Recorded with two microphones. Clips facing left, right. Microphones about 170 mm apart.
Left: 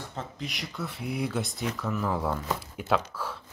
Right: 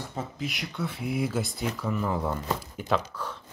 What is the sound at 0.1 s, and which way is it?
Speech, 5° right (ahead or behind).